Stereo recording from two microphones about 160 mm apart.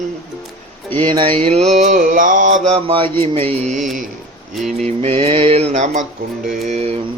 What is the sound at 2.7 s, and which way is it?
Mantra, 35° right (ahead or behind).